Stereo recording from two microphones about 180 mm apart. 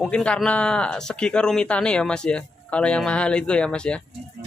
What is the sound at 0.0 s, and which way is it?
Speech, 5° left (ahead or behind).